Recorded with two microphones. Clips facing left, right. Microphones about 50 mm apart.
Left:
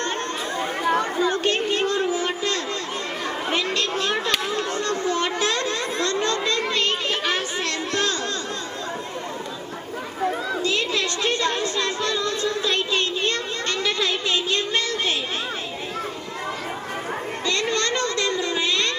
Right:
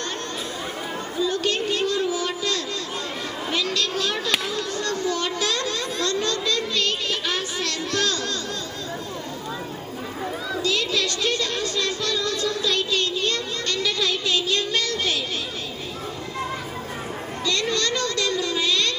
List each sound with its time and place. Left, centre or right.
1.1 s chatter: left
4.5 s children playing: left
6.7 s music: left
10.5 s music: left
17.5 s a sound: left